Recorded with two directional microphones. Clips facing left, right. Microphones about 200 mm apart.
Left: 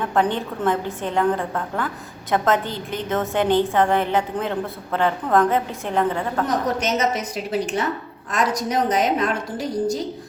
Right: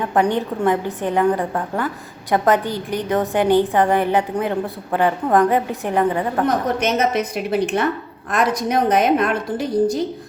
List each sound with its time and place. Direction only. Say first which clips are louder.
0.1 s a woman's voice: right 4 dB; 15° right (ahead or behind)
6.7 s a woman's voice: right 3 dB; 60° right (ahead or behind)